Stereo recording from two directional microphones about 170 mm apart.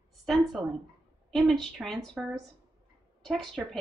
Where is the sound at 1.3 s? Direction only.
Centre (ahead or behind).